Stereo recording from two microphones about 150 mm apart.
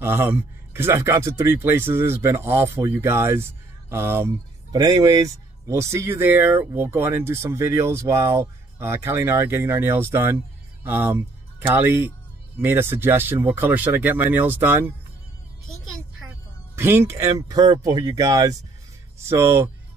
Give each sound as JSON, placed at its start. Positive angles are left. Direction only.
{"t": 0.0, "sound": "speech", "side_deg": -15}
{"t": 4.7, "sound": "speech", "side_deg": -25}
{"t": 16.7, "sound": "speech", "side_deg": -15}